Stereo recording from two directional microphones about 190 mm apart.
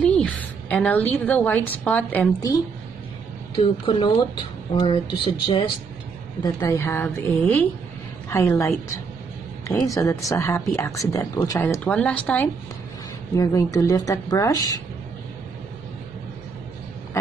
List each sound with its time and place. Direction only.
0.0 s a woman's voice: 5° left (ahead or behind)
3.5 s speech: 25° left (ahead or behind)
6.4 s speech: 15° left (ahead or behind)